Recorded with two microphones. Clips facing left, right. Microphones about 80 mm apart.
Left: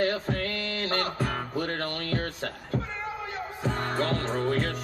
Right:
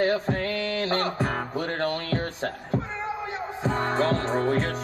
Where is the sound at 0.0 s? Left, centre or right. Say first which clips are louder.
Right 3 dB; right.